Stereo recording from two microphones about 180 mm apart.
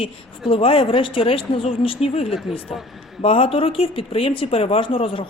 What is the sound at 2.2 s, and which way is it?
Speech, centre (ahead or behind).